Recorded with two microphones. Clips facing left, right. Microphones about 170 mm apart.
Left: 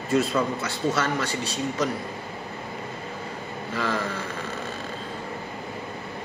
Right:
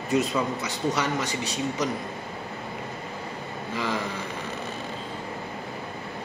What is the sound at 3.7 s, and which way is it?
Speech, 15° right (ahead or behind).